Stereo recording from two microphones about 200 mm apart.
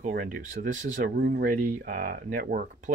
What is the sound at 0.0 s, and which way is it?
Speech, 45° right (ahead or behind).